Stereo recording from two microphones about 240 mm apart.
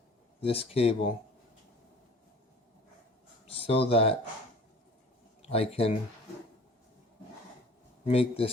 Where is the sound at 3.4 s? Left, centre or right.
Left.